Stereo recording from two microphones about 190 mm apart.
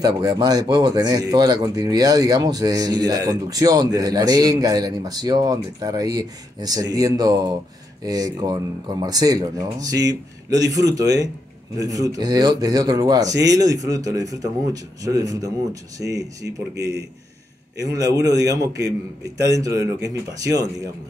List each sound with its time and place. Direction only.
0.0 s a man's voice: 20° right (ahead or behind)